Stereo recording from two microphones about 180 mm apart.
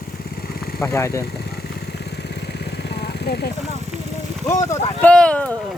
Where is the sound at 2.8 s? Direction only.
65° left (ahead or behind).